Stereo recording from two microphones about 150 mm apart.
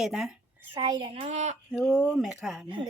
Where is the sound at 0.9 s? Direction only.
30° right (ahead or behind).